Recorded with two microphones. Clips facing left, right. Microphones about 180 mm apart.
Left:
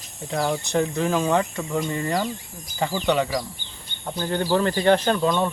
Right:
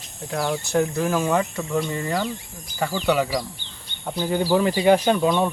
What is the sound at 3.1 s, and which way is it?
Speech, 5° right (ahead or behind).